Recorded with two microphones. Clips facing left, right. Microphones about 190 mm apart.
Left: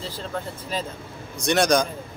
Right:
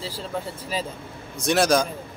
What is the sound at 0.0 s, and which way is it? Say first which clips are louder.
Speech: right 1 dB; 5° right (ahead or behind).